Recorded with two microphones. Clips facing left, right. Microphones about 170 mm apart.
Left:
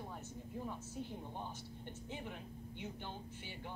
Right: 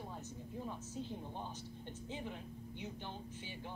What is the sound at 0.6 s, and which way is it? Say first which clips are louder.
Speech: right 2 dB; 20° right (ahead or behind).